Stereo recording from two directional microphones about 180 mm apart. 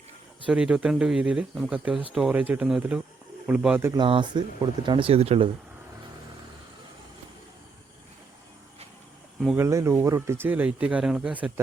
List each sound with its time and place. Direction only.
0.4 s speech: 5° right (ahead or behind)
4.0 s speech: 25° right (ahead or behind)
9.6 s speech: 15° right (ahead or behind)